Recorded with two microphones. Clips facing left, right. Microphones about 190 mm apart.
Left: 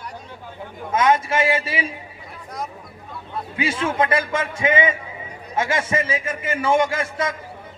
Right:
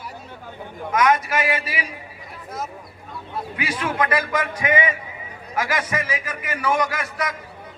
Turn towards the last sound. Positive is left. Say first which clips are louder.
# left 3 dB
turn(degrees=25)  # may be behind; listen again after turning